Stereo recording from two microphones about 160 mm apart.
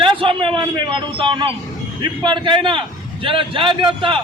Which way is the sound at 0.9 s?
30° right (ahead or behind).